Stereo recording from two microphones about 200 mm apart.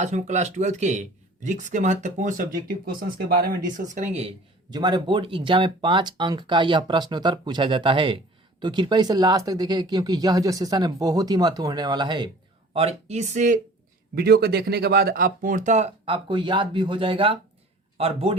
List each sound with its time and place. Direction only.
0.0 s speech: 35° right (ahead or behind)
3.9 s speech: 35° right (ahead or behind)
14.2 s speech: 50° right (ahead or behind); by 18.3 s 30° right (ahead or behind)